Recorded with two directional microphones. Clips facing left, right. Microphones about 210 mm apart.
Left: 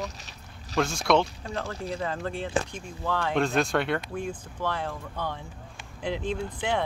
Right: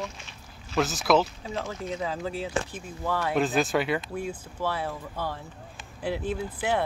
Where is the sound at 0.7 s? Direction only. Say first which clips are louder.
Even; 5° right (ahead or behind).